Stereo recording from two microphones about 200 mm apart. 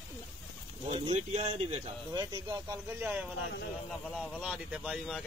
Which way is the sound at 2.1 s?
20° right (ahead or behind).